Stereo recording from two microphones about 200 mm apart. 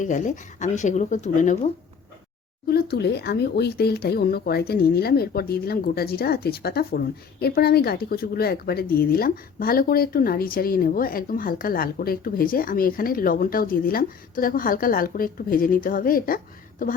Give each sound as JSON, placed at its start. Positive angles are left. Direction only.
{"t": 0.0, "sound": "speech", "side_deg": 40}
{"t": 2.6, "sound": "speech", "side_deg": 50}